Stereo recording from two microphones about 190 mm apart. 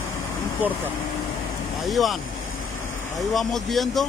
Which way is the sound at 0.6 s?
10° right (ahead or behind).